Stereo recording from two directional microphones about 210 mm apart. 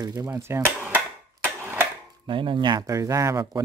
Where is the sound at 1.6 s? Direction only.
10° right (ahead or behind).